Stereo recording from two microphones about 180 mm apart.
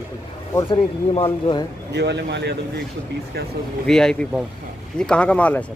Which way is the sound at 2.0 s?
70° right (ahead or behind).